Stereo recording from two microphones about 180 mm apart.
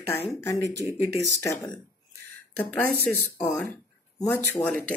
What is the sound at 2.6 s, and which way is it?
Speech, 10° left (ahead or behind).